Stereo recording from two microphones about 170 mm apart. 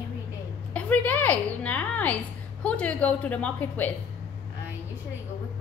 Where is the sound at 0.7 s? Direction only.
10° left (ahead or behind).